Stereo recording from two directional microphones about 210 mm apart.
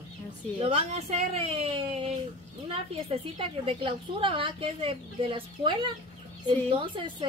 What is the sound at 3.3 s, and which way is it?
Speech, 25° right (ahead or behind).